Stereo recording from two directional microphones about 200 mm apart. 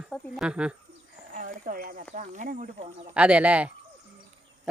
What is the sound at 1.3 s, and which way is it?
Speech, 45° right (ahead or behind).